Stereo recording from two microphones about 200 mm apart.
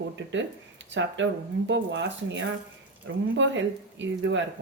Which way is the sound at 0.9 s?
65° right (ahead or behind).